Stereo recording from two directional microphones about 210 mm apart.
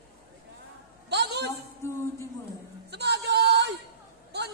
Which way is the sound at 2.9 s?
55° right (ahead or behind).